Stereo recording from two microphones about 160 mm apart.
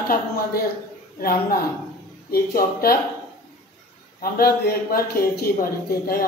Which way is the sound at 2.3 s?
70° left (ahead or behind).